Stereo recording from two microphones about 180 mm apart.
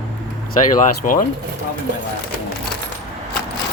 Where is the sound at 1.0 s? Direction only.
50° left (ahead or behind).